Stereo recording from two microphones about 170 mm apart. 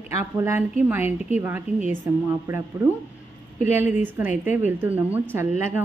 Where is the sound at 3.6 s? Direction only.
10° right (ahead or behind).